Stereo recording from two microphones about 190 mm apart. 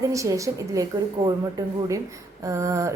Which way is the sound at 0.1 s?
15° right (ahead or behind).